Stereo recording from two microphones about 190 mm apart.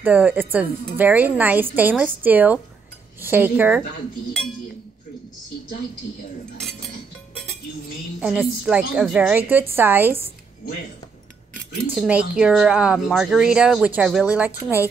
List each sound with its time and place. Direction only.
0.0 s a woman's voice: 10° right (ahead or behind)
8.2 s a woman's voice: 5° right (ahead or behind)
11.9 s a woman's voice: 5° right (ahead or behind)